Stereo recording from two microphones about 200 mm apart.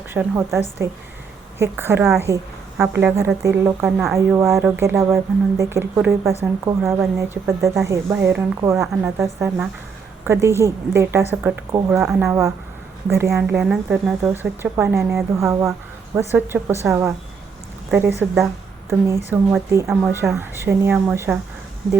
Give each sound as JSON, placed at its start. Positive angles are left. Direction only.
{"t": 0.1, "sound": "a woman's voice", "side_deg": -10}
{"t": 9.2, "sound": "speech", "side_deg": -15}